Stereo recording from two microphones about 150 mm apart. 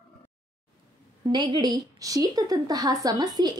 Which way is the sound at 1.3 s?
30° right (ahead or behind).